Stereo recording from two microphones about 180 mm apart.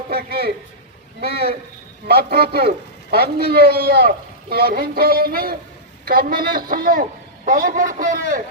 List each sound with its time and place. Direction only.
0.1 s a man's voice: 60° right (ahead or behind)